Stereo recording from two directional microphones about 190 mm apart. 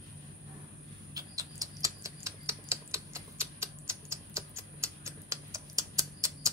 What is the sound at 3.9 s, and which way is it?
Typing, 15° right (ahead or behind).